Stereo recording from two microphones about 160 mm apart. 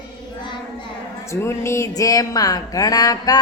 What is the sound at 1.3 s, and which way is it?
Speech, 15° left (ahead or behind).